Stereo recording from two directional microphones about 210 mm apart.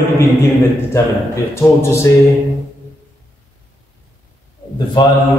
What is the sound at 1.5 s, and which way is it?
Speech, 10° left (ahead or behind).